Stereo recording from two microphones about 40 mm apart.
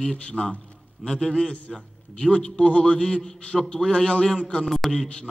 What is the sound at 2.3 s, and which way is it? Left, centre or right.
Speech, left.